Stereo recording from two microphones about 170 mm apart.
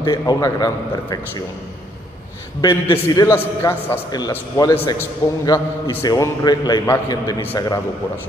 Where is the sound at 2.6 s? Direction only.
25° left (ahead or behind).